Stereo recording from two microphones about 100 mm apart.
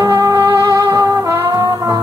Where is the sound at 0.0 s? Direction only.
35° right (ahead or behind).